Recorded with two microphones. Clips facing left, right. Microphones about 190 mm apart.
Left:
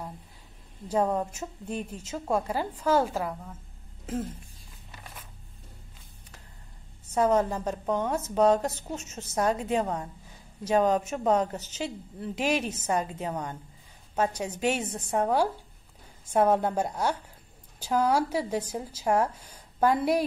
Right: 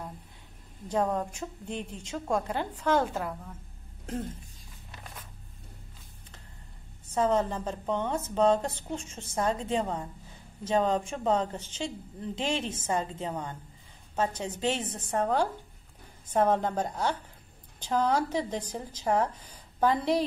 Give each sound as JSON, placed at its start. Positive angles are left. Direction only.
{"t": 0.8, "sound": "a woman's voice", "side_deg": 10}
{"t": 7.2, "sound": "a woman's voice", "side_deg": 10}